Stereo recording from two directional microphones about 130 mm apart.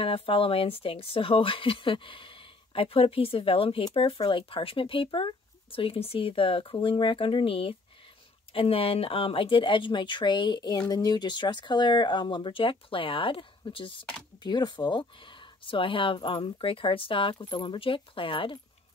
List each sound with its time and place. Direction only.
0.0 s speech: 45° left (ahead or behind)